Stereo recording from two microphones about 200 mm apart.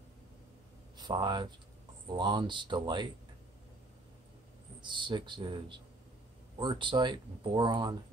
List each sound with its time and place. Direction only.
0.9 s speech: 20° right (ahead or behind)
4.8 s speech: 25° right (ahead or behind)